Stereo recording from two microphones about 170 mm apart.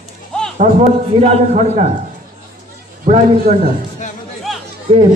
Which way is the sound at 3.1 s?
45° right (ahead or behind).